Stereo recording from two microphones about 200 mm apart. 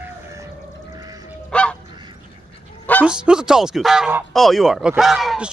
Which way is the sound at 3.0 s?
5° right (ahead or behind).